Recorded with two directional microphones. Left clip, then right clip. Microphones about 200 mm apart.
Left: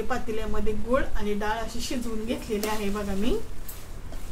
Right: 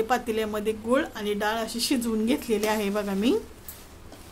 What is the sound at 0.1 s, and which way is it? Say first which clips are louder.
Speech: right 5 dB; 50° right (ahead or behind).